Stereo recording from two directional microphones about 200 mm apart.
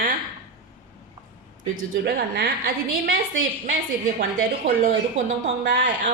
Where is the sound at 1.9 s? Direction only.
50° right (ahead or behind).